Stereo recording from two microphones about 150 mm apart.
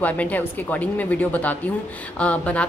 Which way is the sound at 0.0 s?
10° left (ahead or behind).